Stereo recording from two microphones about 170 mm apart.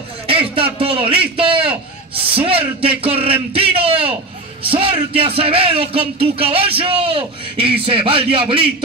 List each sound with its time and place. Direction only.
0.3 s a man's voice: 35° right (ahead or behind)